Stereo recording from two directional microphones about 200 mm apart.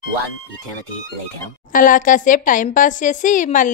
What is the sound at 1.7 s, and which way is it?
Speech, 40° left (ahead or behind).